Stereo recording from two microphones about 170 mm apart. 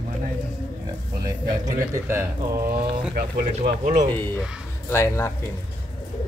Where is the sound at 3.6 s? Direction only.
60° right (ahead or behind).